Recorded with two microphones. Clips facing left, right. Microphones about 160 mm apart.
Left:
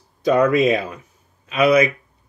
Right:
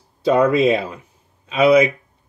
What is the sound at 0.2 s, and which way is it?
Speech, 30° right (ahead or behind).